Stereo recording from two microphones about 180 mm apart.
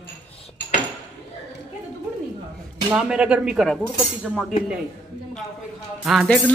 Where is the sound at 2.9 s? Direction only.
5° right (ahead or behind).